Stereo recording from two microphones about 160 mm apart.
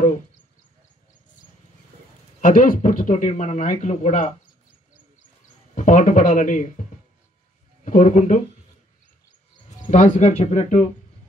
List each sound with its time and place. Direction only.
2.4 s speech: 55° left (ahead or behind)
5.8 s speech: 55° left (ahead or behind)
9.7 s speech: 50° left (ahead or behind)